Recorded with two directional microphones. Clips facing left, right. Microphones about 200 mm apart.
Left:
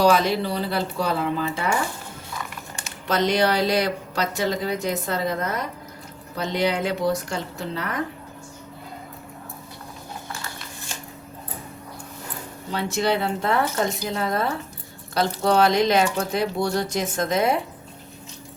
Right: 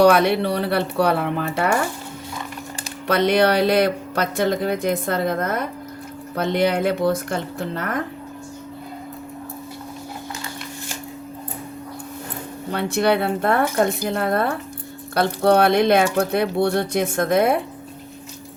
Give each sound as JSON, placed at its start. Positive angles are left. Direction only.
{"t": 0.0, "sound": "speech", "side_deg": -65}
{"t": 3.1, "sound": "speech", "side_deg": -60}
{"t": 12.7, "sound": "speech", "side_deg": -60}